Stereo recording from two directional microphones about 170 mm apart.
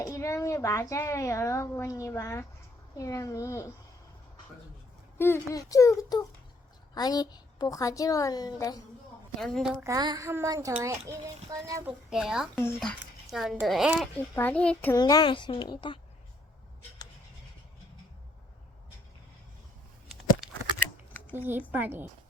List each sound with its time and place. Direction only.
0.0 s a child's voice: 20° left (ahead or behind)
5.1 s a child's voice: 15° left (ahead or behind)
9.4 s speech: centre (ahead or behind)
9.8 s a child's voice: 20° right (ahead or behind)
11.9 s speech: 5° right (ahead or behind)
12.5 s a child's voice: 10° left (ahead or behind)
14.9 s a woman's voice: 20° left (ahead or behind)
21.3 s a woman's voice: 10° right (ahead or behind)